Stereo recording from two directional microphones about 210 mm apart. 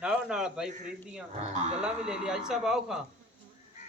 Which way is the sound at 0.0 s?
5° right (ahead or behind).